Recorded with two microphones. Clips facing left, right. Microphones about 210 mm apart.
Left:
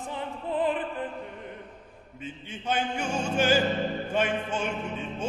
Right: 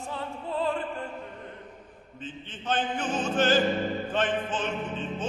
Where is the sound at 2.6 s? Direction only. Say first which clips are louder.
Even; 10° left (ahead or behind).